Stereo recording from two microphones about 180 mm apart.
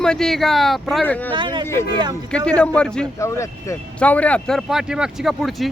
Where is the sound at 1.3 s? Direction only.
25° right (ahead or behind).